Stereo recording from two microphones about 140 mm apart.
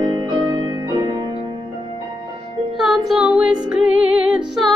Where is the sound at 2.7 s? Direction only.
Centre (ahead or behind).